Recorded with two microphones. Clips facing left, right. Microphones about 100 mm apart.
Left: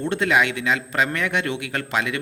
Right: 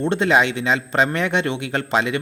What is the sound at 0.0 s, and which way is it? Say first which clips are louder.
A man's voice: right 3 dB; 25° right (ahead or behind).